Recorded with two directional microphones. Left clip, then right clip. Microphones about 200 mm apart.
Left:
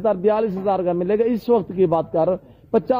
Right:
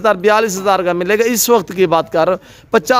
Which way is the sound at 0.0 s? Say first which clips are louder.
Right 7 dB; 15° right (ahead or behind).